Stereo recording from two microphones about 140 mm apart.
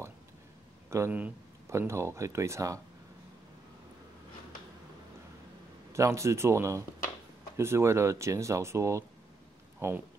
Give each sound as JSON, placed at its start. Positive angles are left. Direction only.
{"t": 0.8, "sound": "speech", "side_deg": -20}
{"t": 5.9, "sound": "speech", "side_deg": -20}